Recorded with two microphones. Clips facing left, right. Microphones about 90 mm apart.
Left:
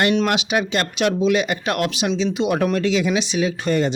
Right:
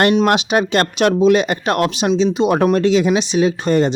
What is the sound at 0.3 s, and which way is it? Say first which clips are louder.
Speech: right 5 dB; 45° right (ahead or behind).